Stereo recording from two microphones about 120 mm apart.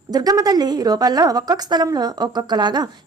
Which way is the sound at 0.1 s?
35° right (ahead or behind).